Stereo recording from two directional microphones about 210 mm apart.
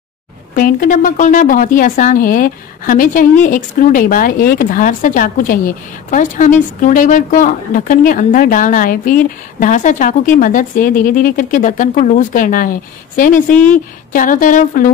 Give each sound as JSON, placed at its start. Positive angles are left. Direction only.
{"t": 0.6, "sound": "speech", "side_deg": 40}